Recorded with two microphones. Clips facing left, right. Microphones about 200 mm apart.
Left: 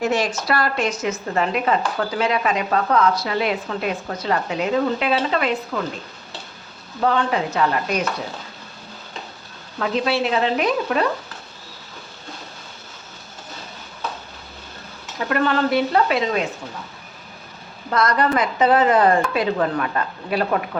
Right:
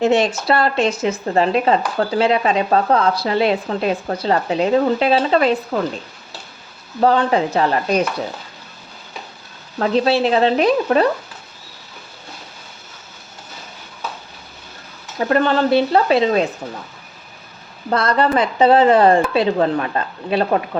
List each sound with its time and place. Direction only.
0.0 s speech: 25° right (ahead or behind)
7.0 s speech: 35° right (ahead or behind)
9.7 s speech: 35° right (ahead or behind)
15.2 s speech: 30° right (ahead or behind)
17.9 s speech: 30° right (ahead or behind)